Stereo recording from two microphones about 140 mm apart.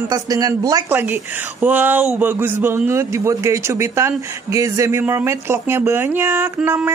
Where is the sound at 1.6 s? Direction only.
15° right (ahead or behind).